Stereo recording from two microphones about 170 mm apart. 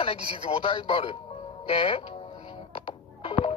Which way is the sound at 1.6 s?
30° left (ahead or behind).